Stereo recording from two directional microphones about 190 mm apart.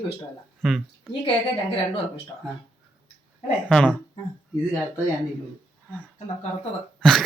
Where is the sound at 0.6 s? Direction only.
Centre (ahead or behind).